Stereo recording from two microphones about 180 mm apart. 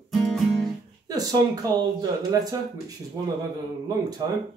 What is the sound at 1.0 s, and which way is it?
Speech, 20° right (ahead or behind).